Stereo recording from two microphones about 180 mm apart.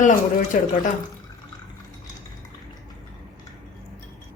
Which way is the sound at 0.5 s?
45° left (ahead or behind).